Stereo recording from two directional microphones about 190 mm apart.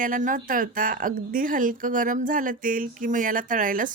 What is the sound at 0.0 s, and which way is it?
Speech, 45° right (ahead or behind).